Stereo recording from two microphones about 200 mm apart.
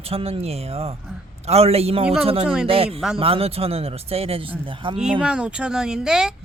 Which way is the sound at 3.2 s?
30° right (ahead or behind).